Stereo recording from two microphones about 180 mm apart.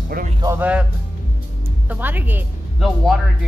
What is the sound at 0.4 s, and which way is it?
Speech, 15° right (ahead or behind).